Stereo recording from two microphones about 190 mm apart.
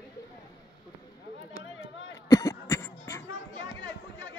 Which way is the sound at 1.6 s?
75° left (ahead or behind).